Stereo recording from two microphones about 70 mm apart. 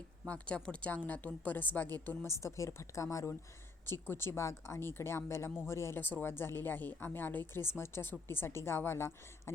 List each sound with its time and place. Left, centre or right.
0.3 s a woman's voice: centre
2.2 s a woman's voice: left
3.8 s a woman's voice: left
6.0 s a woman's voice: left